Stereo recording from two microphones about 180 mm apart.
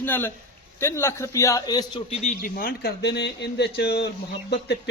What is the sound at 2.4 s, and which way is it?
A man's voice, 55° left (ahead or behind).